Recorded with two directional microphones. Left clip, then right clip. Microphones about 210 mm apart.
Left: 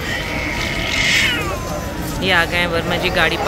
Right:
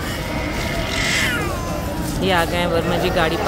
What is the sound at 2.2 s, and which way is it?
Speech, 15° right (ahead or behind).